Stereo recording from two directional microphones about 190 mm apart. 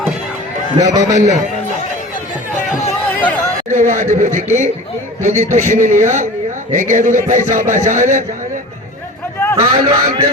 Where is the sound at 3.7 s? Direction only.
40° right (ahead or behind).